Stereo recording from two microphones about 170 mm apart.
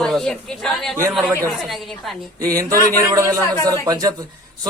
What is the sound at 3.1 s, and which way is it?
Speech, 20° right (ahead or behind).